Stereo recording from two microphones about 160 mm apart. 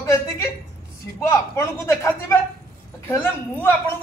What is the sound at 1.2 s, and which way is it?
Speech, 15° left (ahead or behind).